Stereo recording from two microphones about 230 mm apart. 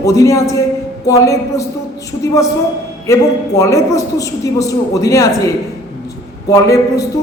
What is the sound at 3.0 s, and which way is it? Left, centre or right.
A woman's voice, centre.